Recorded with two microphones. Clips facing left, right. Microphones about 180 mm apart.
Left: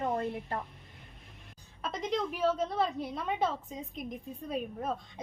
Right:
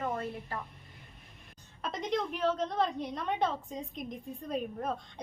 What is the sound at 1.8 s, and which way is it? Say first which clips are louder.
A woman's voice: even; centre (ahead or behind).